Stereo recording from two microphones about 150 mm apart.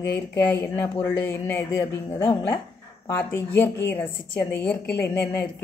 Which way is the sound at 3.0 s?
15° left (ahead or behind).